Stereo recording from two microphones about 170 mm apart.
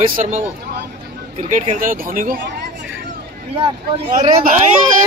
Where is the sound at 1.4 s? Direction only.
45° right (ahead or behind).